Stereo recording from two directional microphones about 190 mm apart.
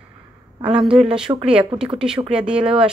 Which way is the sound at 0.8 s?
25° right (ahead or behind).